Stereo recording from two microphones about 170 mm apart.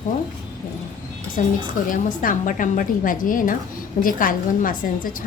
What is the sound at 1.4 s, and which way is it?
A woman's voice, 50° left (ahead or behind).